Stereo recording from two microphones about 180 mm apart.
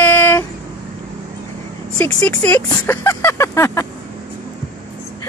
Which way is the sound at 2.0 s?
10° left (ahead or behind).